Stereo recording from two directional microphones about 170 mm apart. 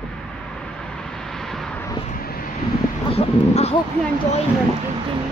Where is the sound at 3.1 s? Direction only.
35° left (ahead or behind).